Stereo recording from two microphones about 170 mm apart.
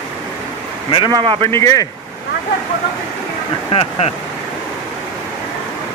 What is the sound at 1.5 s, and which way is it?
Speech, 20° left (ahead or behind).